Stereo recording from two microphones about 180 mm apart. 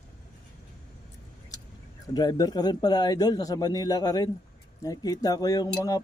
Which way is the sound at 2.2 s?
20° left (ahead or behind).